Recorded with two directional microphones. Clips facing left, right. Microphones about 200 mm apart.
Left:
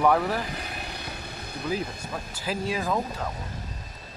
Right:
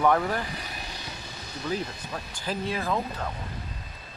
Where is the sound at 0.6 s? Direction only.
60° left (ahead or behind).